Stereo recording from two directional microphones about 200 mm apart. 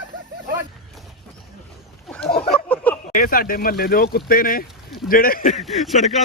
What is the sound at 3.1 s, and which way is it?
Speech, 45° left (ahead or behind).